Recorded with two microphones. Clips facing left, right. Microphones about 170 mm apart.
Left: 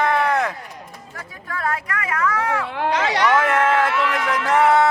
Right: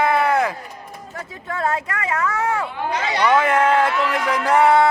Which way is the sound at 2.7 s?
80° left.